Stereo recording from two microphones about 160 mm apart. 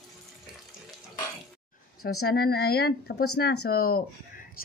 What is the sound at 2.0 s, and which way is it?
Speech, 80° left.